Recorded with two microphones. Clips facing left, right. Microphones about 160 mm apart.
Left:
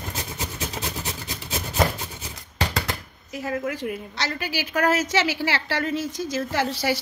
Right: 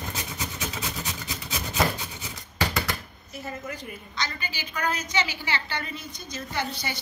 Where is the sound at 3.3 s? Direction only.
90° left.